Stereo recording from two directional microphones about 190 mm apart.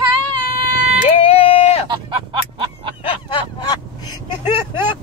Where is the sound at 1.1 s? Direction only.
30° left (ahead or behind).